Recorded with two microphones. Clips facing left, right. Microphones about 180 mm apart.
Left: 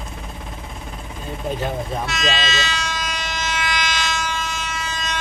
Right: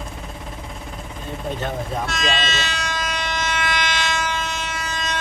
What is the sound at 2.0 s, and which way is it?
Civil defense siren, 55° right (ahead or behind).